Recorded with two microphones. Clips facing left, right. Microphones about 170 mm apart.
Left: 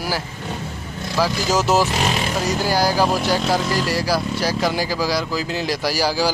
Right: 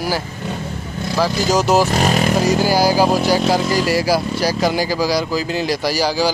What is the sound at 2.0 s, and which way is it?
Speech, 45° right (ahead or behind).